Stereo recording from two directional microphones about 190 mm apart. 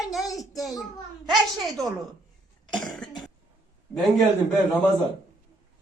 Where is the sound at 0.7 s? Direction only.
20° left (ahead or behind).